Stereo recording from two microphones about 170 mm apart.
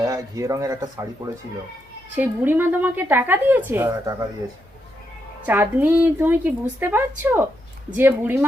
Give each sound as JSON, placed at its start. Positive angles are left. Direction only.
{"t": 0.0, "sound": "speech", "side_deg": -20}
{"t": 2.1, "sound": "a woman's voice", "side_deg": -10}
{"t": 5.5, "sound": "a woman's voice", "side_deg": -10}